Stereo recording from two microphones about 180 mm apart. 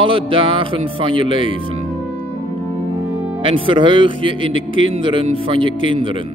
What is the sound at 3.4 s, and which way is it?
Speech, 30° right (ahead or behind).